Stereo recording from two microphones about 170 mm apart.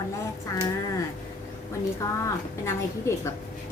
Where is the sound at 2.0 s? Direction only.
20° left (ahead or behind).